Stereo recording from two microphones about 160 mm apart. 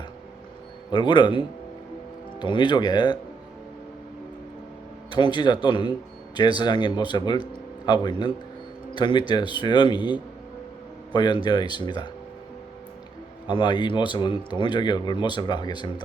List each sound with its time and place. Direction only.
0.9 s speech: 30° left (ahead or behind)
5.1 s a man's voice: 30° left (ahead or behind)
13.5 s speech: 30° left (ahead or behind)